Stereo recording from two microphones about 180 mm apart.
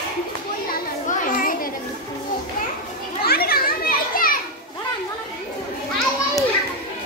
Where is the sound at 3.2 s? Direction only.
60° left (ahead or behind).